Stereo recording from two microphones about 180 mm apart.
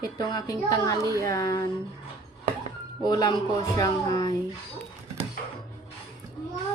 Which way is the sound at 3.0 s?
20° left (ahead or behind).